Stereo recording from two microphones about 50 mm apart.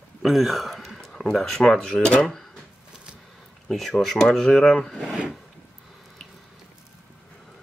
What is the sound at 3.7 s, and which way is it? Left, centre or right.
Speech, centre.